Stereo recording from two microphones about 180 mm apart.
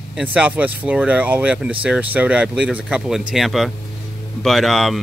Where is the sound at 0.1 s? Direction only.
5° right (ahead or behind).